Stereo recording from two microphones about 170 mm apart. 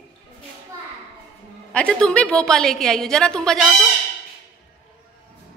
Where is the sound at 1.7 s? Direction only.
5° left (ahead or behind).